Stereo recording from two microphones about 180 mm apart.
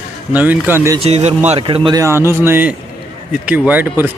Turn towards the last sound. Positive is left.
turn(degrees=-10)  # may be behind; listen again after turning